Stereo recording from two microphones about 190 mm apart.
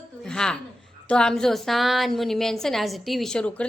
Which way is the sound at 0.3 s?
5° left (ahead or behind).